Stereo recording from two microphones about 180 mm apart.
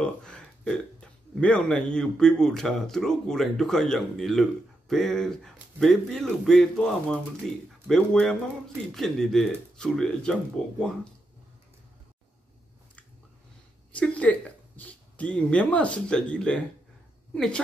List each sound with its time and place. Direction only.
0.0 s a man's voice: 5° left (ahead or behind)
13.9 s speech: 5° left (ahead or behind)